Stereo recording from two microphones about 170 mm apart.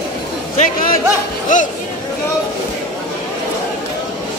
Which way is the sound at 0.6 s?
50° left (ahead or behind).